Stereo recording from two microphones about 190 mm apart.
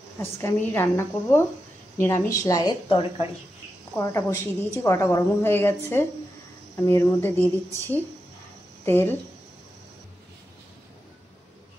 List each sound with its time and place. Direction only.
0.2 s a woman's voice: 10° left (ahead or behind); by 3.3 s 30° left (ahead or behind)
4.0 s a woman's voice: 15° left (ahead or behind)